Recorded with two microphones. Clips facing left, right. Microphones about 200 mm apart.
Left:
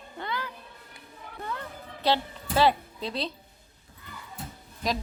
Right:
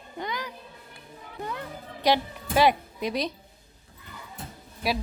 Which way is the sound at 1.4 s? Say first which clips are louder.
Right 2 dB; 15° right (ahead or behind).